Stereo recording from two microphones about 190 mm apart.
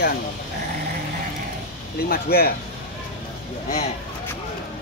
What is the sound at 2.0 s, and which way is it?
Speech, 55° left (ahead or behind).